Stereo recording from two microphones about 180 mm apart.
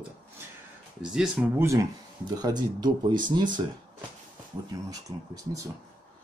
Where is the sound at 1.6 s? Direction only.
20° right (ahead or behind).